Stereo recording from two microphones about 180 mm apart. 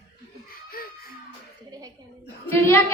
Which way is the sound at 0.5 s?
55° left (ahead or behind).